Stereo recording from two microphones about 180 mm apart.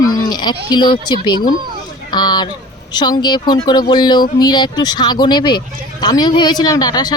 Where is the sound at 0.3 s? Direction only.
25° left (ahead or behind).